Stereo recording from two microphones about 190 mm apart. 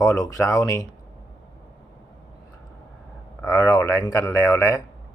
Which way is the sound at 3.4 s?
20° left (ahead or behind).